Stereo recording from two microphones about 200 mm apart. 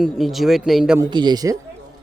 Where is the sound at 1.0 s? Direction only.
20° right (ahead or behind).